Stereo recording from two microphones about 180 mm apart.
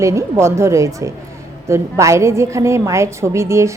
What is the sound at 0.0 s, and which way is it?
A woman's voice, 15° right (ahead or behind).